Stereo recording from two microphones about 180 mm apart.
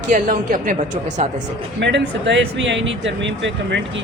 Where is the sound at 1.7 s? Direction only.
80° right.